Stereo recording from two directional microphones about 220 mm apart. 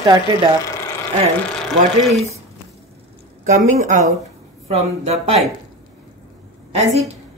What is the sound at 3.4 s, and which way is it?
Speech, 35° right (ahead or behind).